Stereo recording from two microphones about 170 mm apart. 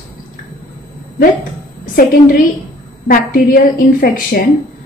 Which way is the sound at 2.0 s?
60° left (ahead or behind).